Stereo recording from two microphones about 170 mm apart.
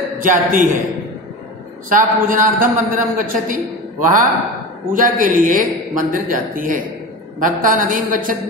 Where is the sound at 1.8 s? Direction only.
55° right (ahead or behind).